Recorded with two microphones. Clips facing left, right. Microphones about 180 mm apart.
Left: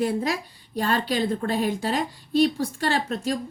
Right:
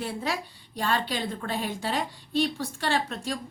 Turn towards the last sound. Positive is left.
turn(degrees=40)  # may be behind; listen again after turning